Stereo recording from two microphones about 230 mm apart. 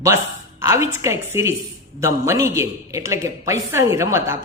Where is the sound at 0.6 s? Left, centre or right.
Centre.